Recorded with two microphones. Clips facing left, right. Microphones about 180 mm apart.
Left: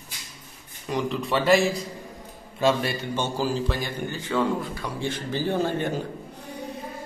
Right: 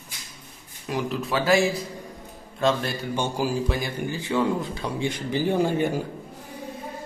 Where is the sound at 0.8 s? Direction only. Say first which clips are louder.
Left 1 dB; 5° right (ahead or behind).